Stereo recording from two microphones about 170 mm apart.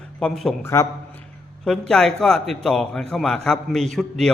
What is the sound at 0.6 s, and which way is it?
Speech, 15° left (ahead or behind).